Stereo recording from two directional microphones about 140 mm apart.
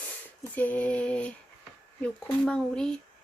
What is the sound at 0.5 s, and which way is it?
Speech, 10° left (ahead or behind).